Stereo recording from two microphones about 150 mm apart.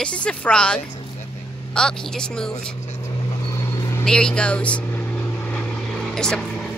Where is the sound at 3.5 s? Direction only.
20° left (ahead or behind).